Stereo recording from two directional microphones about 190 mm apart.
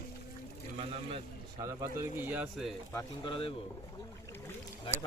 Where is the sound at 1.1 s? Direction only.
20° right (ahead or behind).